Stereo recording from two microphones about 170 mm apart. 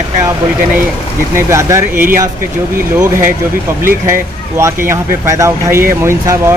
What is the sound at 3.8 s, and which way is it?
Speech, 15° right (ahead or behind).